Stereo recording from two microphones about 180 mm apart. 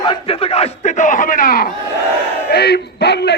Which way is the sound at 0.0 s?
30° left (ahead or behind).